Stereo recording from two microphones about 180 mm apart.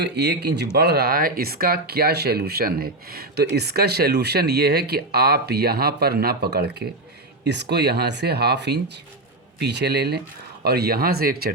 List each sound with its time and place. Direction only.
0.0 s speech: 70° right (ahead or behind)